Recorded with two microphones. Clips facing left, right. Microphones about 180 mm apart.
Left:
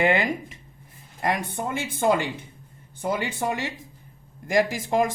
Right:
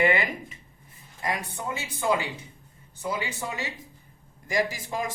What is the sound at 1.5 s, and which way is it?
Speech, 50° left (ahead or behind).